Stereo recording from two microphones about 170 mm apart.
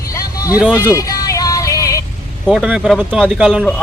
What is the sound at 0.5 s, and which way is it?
Speech, 5° right (ahead or behind).